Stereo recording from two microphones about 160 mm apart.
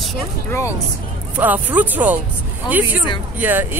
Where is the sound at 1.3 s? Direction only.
10° right (ahead or behind).